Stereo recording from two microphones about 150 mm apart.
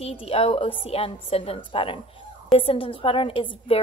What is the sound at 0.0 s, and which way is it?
A woman's voice, 40° left (ahead or behind).